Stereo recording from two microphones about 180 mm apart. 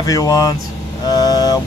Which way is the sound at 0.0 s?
20° left (ahead or behind).